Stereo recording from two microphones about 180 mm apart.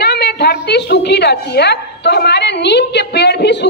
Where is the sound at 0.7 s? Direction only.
70° left (ahead or behind).